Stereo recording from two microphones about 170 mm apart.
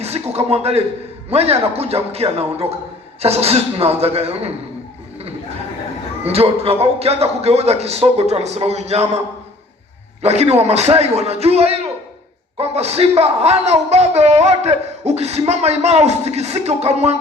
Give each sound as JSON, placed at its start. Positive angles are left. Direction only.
{"t": 0.0, "sound": "speech", "side_deg": -40}
{"t": 6.2, "sound": "speech", "side_deg": -35}
{"t": 10.2, "sound": "speech", "side_deg": -40}